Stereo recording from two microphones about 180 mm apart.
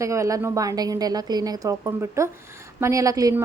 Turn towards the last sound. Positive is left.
turn(degrees=-20)  # may be behind; listen again after turning